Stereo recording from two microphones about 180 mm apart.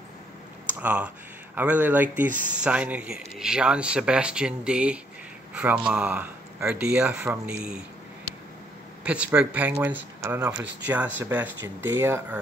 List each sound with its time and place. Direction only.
0.7 s speech: 10° right (ahead or behind)
2.3 s speech: 45° right (ahead or behind)
2.6 s speech: 5° right (ahead or behind)
9.0 s speech: 5° right (ahead or behind)